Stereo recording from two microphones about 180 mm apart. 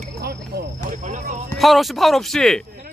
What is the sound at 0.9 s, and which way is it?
Speech, 45° right (ahead or behind).